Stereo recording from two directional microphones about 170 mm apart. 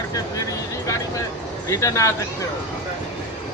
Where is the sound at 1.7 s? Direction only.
15° left (ahead or behind).